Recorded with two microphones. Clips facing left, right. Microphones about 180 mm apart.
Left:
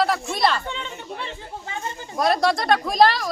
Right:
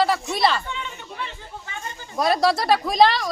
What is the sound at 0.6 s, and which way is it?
Chatter, 30° left (ahead or behind).